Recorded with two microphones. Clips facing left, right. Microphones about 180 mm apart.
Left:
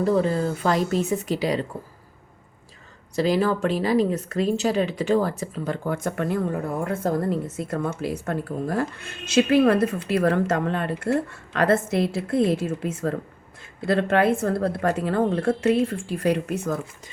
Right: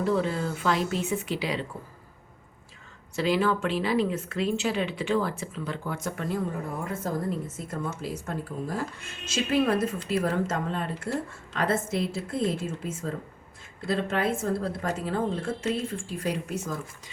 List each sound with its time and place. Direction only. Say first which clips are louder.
0.0 s speech: left 5 dB; 40° left (ahead or behind)
3.2 s speech: left 4 dB; 40° left (ahead or behind); by 16.7 s 60° left (ahead or behind)